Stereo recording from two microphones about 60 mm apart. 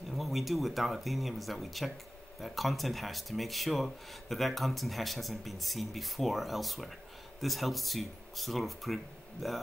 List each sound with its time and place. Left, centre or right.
0.1 s speech: centre